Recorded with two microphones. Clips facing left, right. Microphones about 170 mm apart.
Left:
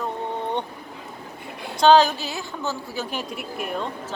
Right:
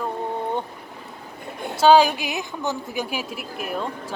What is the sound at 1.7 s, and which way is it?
A woman's voice, 10° right (ahead or behind).